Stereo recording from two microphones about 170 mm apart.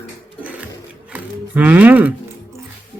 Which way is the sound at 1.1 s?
10° right (ahead or behind).